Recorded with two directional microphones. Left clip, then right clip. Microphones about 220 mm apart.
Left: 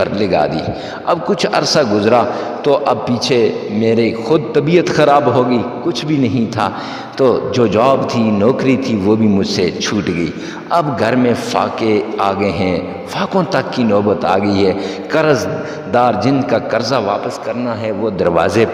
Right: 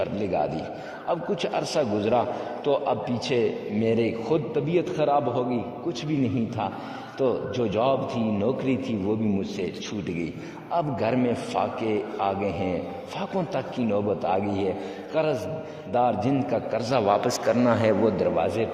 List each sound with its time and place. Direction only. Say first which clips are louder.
0.0 s a man's voice: left 12 dB; 35° left (ahead or behind)
7.2 s a man's voice: left 13 dB; 40° left (ahead or behind); by 17.2 s 25° left (ahead or behind)
17.2 s speech: left 3 dB; 10° left (ahead or behind)
18.2 s a man's voice: left 12 dB; 40° left (ahead or behind)